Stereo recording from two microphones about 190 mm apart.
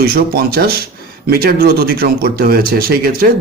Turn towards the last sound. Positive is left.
turn(degrees=-50)  # may be behind; listen again after turning